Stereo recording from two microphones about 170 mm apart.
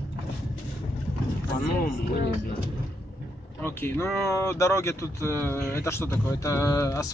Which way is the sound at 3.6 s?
15° left (ahead or behind).